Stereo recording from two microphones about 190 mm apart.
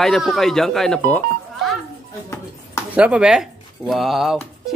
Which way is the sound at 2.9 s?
5° right (ahead or behind).